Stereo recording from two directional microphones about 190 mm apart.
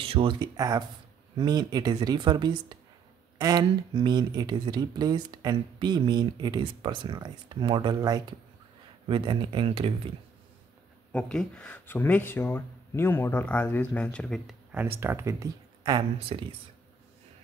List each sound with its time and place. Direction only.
0.0 s speech: 30° right (ahead or behind)
11.1 s speech: 5° left (ahead or behind)
15.0 s speech: 15° right (ahead or behind)